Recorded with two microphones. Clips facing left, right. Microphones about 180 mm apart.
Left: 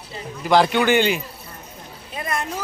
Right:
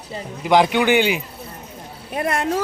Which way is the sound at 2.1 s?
70° right (ahead or behind).